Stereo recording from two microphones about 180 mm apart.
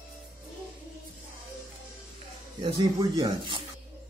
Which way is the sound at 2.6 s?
25° right (ahead or behind).